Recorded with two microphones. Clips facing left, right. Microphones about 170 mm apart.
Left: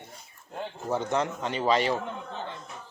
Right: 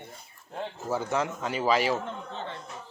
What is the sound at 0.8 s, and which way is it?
Speech, 5° right (ahead or behind).